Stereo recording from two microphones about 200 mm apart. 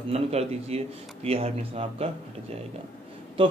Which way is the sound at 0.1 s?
30° right (ahead or behind).